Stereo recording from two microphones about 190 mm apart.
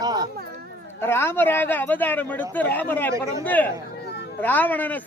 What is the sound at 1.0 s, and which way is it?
Speech, 10° left (ahead or behind).